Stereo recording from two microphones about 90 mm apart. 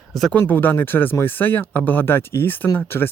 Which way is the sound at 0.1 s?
Centre (ahead or behind).